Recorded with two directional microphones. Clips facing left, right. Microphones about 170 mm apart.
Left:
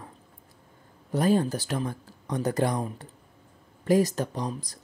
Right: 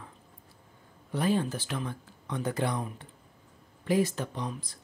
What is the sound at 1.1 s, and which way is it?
Speech, 40° left (ahead or behind).